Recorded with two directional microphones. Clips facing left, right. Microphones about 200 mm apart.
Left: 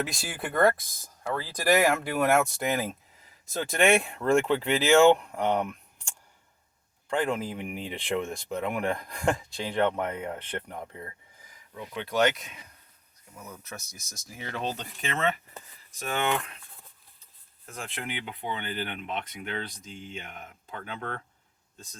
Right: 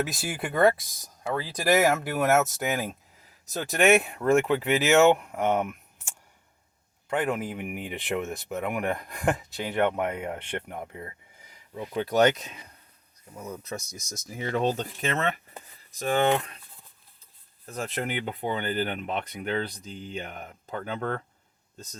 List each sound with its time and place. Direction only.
0.0 s speech: 5° right (ahead or behind); by 11.9 s 25° right (ahead or behind)
11.9 s speech: 40° right (ahead or behind)
13.9 s speech: 20° right (ahead or behind)
14.4 s speech: 40° right (ahead or behind)
17.7 s speech: 40° right (ahead or behind)